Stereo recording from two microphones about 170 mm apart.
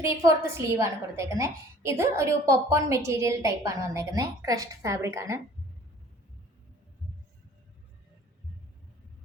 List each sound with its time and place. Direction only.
0.0 s a woman's voice: 15° right (ahead or behind)